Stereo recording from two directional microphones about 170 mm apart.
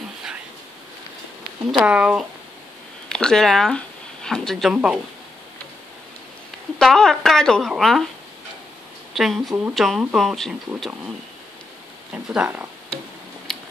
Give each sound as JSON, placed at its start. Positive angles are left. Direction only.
{"t": 1.7, "sound": "speech", "side_deg": -5}
{"t": 6.8, "sound": "speech", "side_deg": 0}
{"t": 9.1, "sound": "speech", "side_deg": 0}
{"t": 9.5, "sound": "speech", "side_deg": -15}
{"t": 9.8, "sound": "speech", "side_deg": 0}
{"t": 12.1, "sound": "speech", "side_deg": -5}
{"t": 13.5, "sound": "a sound", "side_deg": 0}